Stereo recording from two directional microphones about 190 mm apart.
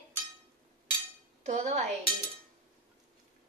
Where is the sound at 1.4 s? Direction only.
35° right (ahead or behind).